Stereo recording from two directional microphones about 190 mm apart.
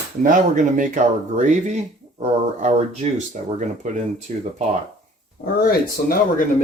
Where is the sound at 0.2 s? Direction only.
45° right (ahead or behind).